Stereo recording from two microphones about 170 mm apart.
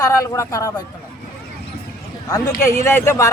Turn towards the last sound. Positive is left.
turn(degrees=15)  # may be behind; listen again after turning